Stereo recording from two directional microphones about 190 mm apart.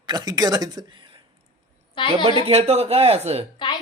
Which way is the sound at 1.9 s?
25° left (ahead or behind).